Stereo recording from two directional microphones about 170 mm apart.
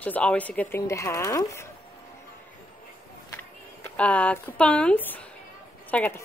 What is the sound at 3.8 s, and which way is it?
A woman's voice, 10° left (ahead or behind).